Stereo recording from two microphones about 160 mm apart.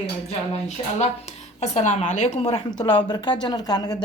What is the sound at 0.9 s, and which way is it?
A woman's voice, 45° left (ahead or behind).